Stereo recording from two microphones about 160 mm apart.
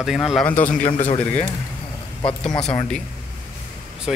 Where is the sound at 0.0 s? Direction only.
Centre (ahead or behind).